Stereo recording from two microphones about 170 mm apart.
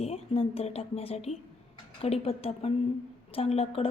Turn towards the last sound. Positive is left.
turn(degrees=35)  # may be behind; listen again after turning